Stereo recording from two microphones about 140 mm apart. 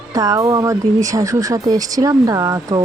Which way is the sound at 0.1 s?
25° right (ahead or behind).